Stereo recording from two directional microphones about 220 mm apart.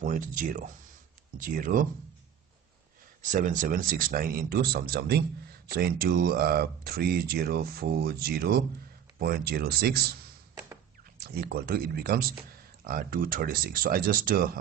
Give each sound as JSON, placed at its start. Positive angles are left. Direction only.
{"t": 0.0, "sound": "speech", "side_deg": -35}
{"t": 3.2, "sound": "speech", "side_deg": -35}
{"t": 11.1, "sound": "speech", "side_deg": -45}